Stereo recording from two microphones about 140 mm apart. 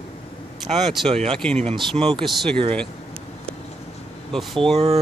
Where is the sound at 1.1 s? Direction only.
45° right (ahead or behind).